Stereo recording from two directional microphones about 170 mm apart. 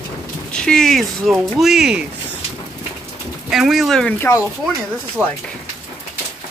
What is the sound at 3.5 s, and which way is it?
Speech, centre (ahead or behind).